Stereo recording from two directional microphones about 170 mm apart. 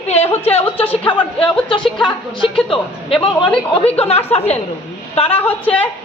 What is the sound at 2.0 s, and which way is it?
A woman's voice, 30° left (ahead or behind).